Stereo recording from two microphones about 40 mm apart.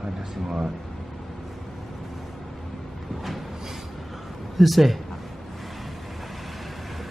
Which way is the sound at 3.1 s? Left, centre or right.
Centre.